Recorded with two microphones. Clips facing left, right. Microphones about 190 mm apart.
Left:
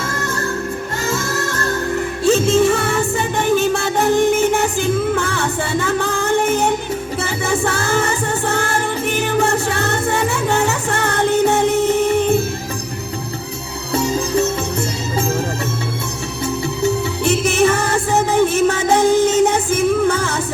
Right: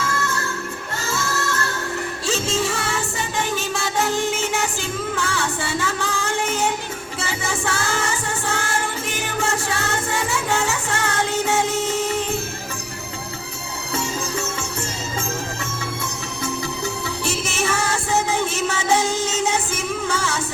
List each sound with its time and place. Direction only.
0.0 s music: 35° left (ahead or behind)
2.2 s music: 55° left (ahead or behind)
13.9 s music: 35° left (ahead or behind)
17.2 s music: 60° left (ahead or behind)